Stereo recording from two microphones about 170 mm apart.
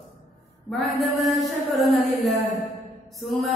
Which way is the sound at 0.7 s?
Centre (ahead or behind).